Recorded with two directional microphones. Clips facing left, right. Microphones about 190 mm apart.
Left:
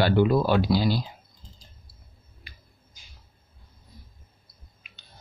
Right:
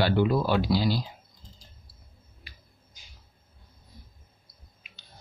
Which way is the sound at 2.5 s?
50° left (ahead or behind).